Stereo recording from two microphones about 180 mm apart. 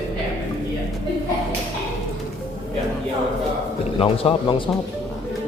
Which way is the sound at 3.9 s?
30° left (ahead or behind).